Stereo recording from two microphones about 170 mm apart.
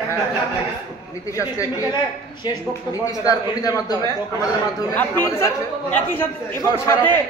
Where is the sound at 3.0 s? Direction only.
20° left (ahead or behind).